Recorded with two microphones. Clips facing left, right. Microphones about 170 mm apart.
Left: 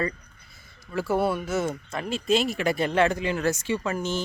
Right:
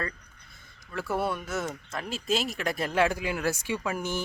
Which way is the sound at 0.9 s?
Centre (ahead or behind).